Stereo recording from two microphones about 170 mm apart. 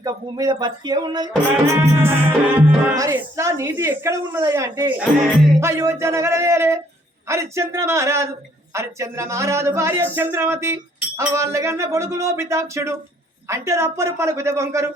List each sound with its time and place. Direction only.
0.0 s speech: 20° right (ahead or behind)
1.7 s speech: 10° right (ahead or behind)